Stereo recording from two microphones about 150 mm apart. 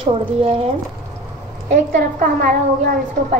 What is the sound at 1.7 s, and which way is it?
Speech, 80° right.